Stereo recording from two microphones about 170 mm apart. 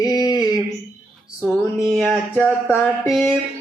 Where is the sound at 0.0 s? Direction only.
25° left (ahead or behind).